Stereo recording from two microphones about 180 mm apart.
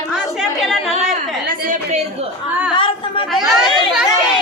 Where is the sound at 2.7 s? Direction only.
30° left (ahead or behind).